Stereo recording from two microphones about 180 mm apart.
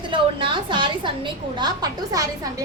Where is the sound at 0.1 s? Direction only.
30° right (ahead or behind).